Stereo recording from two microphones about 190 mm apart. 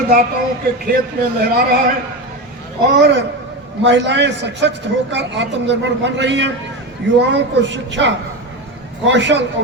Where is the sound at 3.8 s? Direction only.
70° right (ahead or behind).